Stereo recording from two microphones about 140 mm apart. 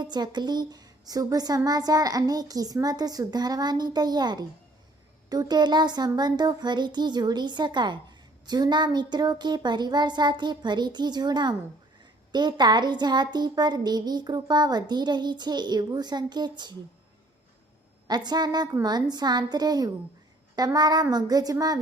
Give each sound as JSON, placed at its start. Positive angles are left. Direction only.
{"t": 0.0, "sound": "a woman's voice", "side_deg": -30}
{"t": 18.1, "sound": "a woman's voice", "side_deg": -30}